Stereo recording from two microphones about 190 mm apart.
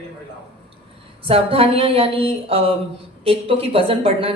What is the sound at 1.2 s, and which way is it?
A man's voice, 30° right (ahead or behind).